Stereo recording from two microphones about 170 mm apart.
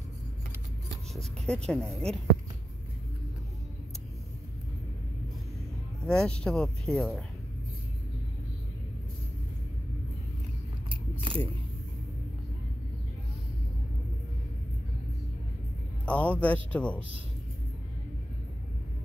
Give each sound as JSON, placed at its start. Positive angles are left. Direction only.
{"t": 1.1, "sound": "speech", "side_deg": 5}
{"t": 6.0, "sound": "speech", "side_deg": 5}
{"t": 10.9, "sound": "biting", "side_deg": -30}
{"t": 16.1, "sound": "speech", "side_deg": 10}